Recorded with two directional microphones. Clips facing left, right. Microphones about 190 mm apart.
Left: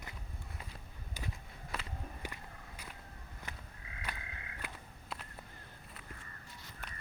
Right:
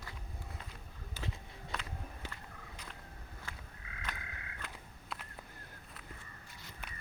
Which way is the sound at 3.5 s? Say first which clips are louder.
Left 1 dB; 20° left (ahead or behind).